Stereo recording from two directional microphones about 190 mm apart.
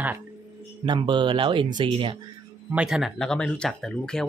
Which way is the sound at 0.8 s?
25° right (ahead or behind).